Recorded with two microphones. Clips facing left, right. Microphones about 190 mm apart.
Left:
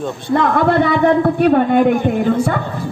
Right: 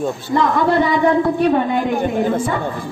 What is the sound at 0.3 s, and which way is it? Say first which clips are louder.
A man's voice: left 2 dB; 55° left (ahead or behind).